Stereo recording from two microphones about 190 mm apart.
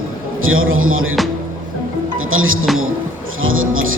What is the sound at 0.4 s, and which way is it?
Speech, 90° right.